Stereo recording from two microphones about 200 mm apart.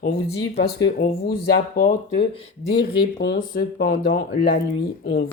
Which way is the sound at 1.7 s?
45° left (ahead or behind).